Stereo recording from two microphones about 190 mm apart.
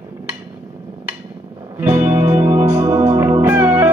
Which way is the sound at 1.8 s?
15° right (ahead or behind).